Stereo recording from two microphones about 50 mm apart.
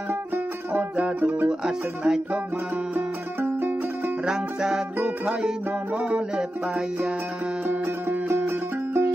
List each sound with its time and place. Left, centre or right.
0.9 s music: right
1.5 s speech: centre
2.9 s music: right
4.3 s speech: centre
4.9 s music: right
7.6 s music: right
8.3 s music: right